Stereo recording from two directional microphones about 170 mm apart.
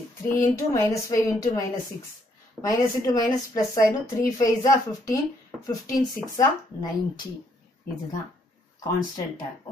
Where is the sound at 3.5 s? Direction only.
20° left (ahead or behind).